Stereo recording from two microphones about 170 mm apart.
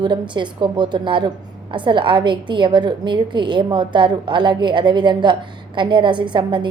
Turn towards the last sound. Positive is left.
turn(degrees=-25)  # may be behind; listen again after turning